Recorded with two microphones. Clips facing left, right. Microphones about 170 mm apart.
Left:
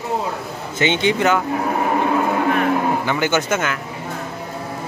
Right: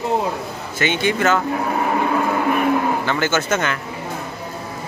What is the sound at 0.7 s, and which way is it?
Speech, 20° left (ahead or behind).